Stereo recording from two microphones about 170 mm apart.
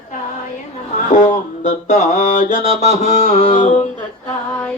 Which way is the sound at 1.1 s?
45° left (ahead or behind).